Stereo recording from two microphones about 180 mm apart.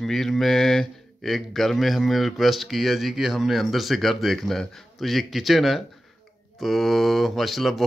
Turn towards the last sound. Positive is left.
turn(degrees=0)  # may be behind; listen again after turning